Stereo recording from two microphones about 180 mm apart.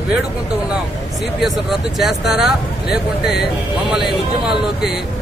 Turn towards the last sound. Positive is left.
turn(degrees=0)  # may be behind; listen again after turning